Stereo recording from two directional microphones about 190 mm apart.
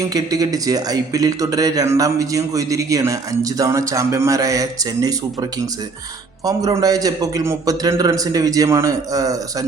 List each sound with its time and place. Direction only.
0.1 s a man's voice: 20° right (ahead or behind)